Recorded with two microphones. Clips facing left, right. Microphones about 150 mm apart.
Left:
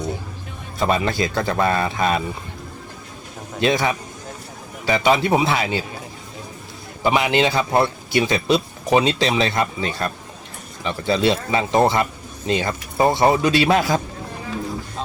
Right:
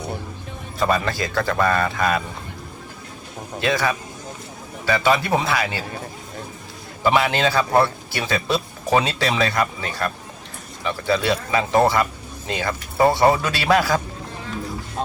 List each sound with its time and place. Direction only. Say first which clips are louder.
0.8 s speech: left 1 dB; 20° left (ahead or behind)
3.6 s speech: left 2 dB; 20° left (ahead or behind)
7.0 s speech: left 1 dB; 20° left (ahead or behind)